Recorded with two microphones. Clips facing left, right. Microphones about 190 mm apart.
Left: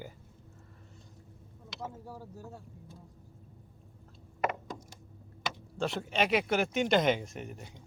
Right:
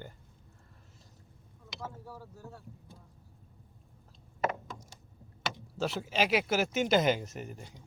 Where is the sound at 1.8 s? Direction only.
15° left (ahead or behind).